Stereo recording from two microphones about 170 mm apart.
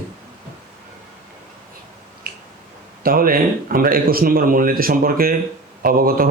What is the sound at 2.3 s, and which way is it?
Finger snapping, 65° right (ahead or behind).